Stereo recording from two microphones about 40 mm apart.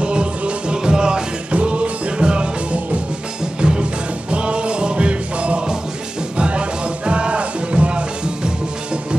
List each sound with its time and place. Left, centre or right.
0.0 s music: right